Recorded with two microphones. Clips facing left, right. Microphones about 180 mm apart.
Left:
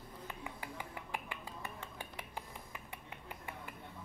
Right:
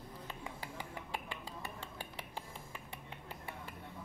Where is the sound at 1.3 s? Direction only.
30° right (ahead or behind).